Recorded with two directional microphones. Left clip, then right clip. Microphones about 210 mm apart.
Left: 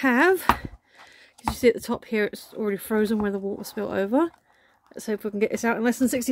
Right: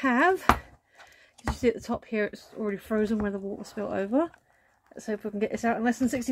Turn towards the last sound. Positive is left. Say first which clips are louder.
# left 4 dB
turn(degrees=45)  # may be behind; listen again after turning